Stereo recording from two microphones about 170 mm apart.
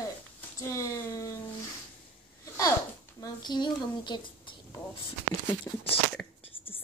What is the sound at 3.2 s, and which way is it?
Speech, 25° left (ahead or behind).